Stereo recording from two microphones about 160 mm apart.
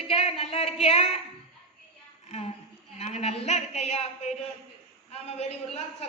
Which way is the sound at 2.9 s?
40° left (ahead or behind).